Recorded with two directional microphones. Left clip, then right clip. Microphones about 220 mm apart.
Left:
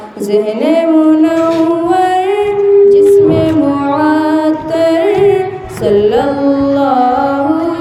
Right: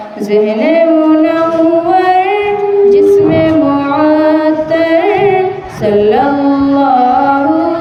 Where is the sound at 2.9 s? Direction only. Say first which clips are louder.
Even; 30° left (ahead or behind).